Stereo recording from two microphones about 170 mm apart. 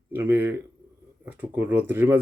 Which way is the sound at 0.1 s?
10° right (ahead or behind).